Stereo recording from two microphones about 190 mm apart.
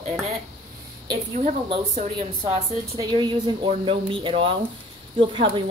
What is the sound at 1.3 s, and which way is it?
A woman's voice, 35° right (ahead or behind).